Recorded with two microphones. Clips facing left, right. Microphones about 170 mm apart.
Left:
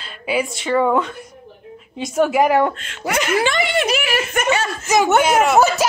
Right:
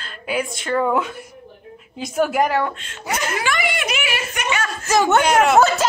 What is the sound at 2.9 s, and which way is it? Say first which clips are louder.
Speech: left 4 dB; 85° left.